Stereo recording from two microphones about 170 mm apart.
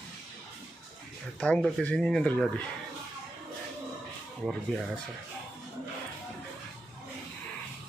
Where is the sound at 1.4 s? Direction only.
5° left (ahead or behind).